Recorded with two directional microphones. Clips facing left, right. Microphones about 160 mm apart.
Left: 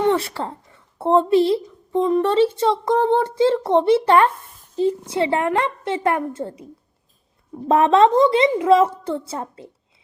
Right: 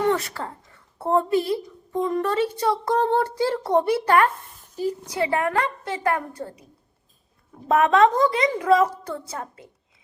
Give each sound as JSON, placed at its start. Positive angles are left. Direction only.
{"t": 0.0, "sound": "speech", "side_deg": 25}
{"t": 7.7, "sound": "speech", "side_deg": 30}